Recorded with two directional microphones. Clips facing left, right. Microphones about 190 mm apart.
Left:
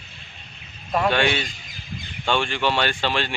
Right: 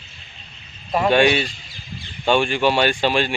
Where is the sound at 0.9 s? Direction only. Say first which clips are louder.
Right 5 dB; 15° right (ahead or behind).